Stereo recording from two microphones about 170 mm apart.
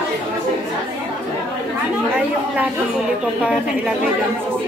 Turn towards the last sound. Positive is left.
turn(degrees=-5)  # may be behind; listen again after turning